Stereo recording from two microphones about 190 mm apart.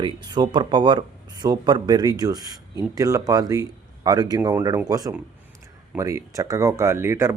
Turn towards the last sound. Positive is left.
turn(degrees=-15)  # may be behind; listen again after turning